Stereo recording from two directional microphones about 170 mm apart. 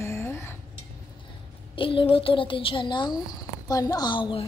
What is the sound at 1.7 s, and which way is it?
Speech, 30° left (ahead or behind).